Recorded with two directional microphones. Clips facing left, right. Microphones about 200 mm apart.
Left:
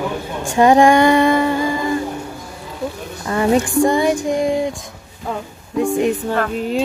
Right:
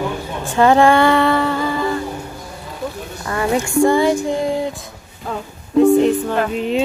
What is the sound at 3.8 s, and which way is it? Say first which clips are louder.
Female singing: right 1 dB; 15° left (ahead or behind).